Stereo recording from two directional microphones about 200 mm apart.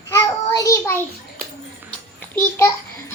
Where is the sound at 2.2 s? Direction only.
15° left (ahead or behind).